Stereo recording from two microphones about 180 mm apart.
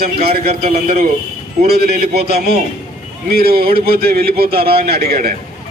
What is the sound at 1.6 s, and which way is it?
A man's voice, 60° right (ahead or behind).